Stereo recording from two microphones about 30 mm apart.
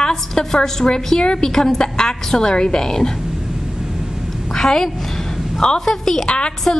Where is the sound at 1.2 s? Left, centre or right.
Left.